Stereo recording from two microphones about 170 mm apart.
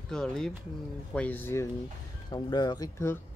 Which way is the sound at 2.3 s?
25° left (ahead or behind).